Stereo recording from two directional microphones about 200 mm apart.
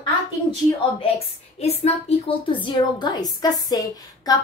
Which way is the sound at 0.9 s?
30° left (ahead or behind).